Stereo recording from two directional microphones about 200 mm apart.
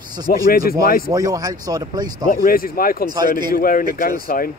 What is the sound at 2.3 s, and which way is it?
Speech, 45° left (ahead or behind).